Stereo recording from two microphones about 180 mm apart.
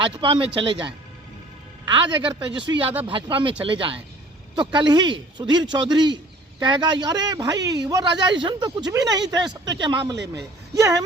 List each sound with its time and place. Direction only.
0.0 s a man's voice: 30° right (ahead or behind)